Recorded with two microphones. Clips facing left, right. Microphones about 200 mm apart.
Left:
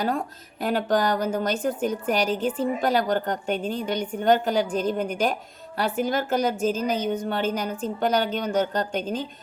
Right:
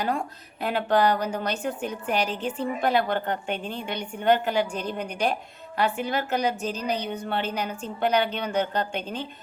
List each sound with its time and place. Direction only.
0.0 s a woman's voice: 40° left (ahead or behind)